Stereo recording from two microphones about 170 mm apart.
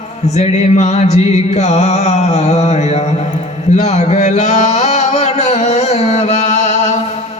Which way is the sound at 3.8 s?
40° left (ahead or behind).